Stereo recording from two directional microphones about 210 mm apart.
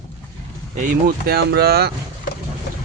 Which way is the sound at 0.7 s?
40° right (ahead or behind).